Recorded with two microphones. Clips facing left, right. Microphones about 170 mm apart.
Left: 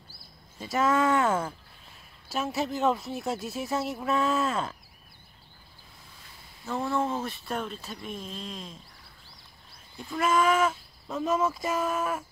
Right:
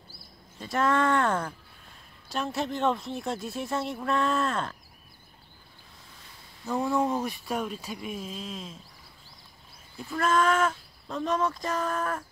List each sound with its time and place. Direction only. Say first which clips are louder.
0.6 s speech: even; 5° left (ahead or behind)
6.6 s speech: right 2 dB; 10° right (ahead or behind)
9.9 s speech: even; centre (ahead or behind)